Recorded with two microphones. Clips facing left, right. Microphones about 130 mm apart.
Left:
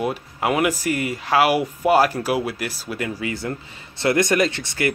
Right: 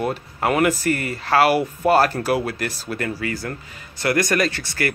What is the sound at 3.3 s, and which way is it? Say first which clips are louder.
Speech: left 1 dB; 20° left (ahead or behind).